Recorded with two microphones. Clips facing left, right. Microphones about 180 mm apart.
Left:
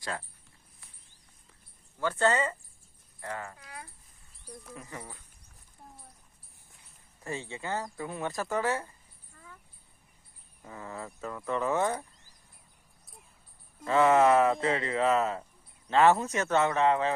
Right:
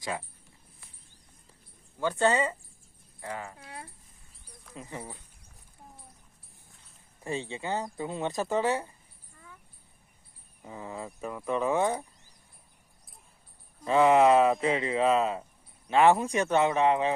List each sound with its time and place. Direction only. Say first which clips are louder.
2.0 s speech: right 1 dB; 15° right (ahead or behind)
3.6 s a sound: right 2 dB; 30° right (ahead or behind)
4.7 s speech: right 4 dB; 20° right (ahead or behind)
7.3 s speech: right 3 dB; 20° right (ahead or behind)
10.6 s speech: right 2 dB; 15° right (ahead or behind)
13.8 s speech: right 2 dB; 15° right (ahead or behind)